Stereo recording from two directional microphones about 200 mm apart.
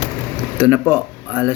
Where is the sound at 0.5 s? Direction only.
5° right (ahead or behind).